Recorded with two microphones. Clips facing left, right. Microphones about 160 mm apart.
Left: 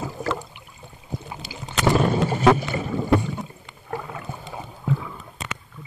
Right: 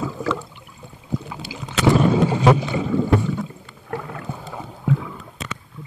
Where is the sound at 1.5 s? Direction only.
70° right (ahead or behind).